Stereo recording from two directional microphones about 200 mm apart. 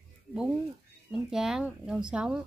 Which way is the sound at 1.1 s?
Centre (ahead or behind).